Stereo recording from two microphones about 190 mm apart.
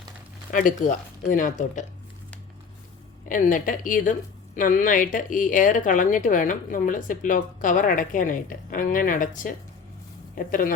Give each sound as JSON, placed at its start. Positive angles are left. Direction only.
{"t": 0.5, "sound": "a woman's voice", "side_deg": 45}
{"t": 3.2, "sound": "a woman's voice", "side_deg": 45}